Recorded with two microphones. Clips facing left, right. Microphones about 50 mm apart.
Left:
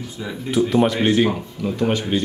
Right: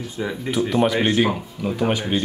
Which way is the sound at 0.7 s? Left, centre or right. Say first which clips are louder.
Left 1 dB; centre.